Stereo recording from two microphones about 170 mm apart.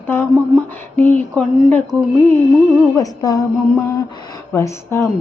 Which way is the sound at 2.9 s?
20° left (ahead or behind).